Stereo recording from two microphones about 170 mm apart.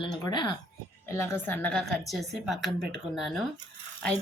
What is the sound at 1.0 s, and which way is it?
A woman's voice, 15° left (ahead or behind).